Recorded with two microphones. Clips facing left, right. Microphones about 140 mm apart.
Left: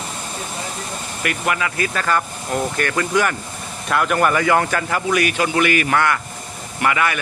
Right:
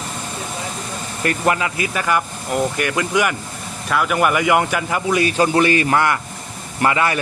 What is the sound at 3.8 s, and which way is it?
Speech, centre (ahead or behind).